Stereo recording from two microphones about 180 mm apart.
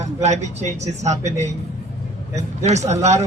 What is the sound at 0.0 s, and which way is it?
A man's voice, 40° right (ahead or behind).